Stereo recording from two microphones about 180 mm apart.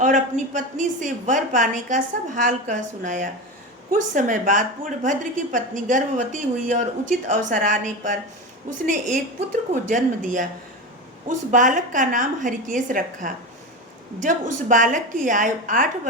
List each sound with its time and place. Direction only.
0.0 s a woman's voice: 45° right (ahead or behind)